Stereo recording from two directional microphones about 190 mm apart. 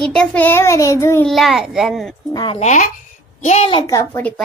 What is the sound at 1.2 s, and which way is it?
Speech, centre (ahead or behind).